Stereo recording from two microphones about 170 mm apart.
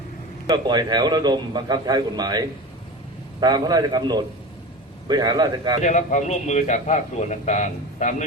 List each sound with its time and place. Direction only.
0.4 s a man's voice: 25° right (ahead or behind)
5.8 s a man's voice: 45° left (ahead or behind)